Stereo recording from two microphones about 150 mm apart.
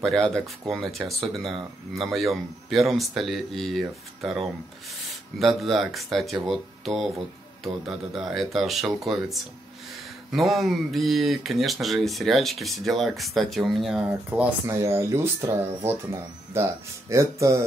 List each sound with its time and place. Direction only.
0.0 s speech: 5° left (ahead or behind); by 17.6 s 20° right (ahead or behind)